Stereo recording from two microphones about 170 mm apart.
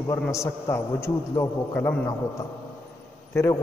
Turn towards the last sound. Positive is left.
turn(degrees=15)  # may be behind; listen again after turning